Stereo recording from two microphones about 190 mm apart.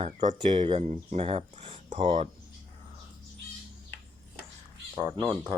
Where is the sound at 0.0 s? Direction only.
40° right (ahead or behind).